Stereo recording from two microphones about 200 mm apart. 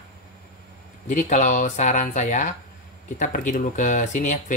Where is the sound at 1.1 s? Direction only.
35° left (ahead or behind).